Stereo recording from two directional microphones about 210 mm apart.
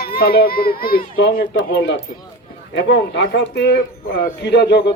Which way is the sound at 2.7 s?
55° left (ahead or behind).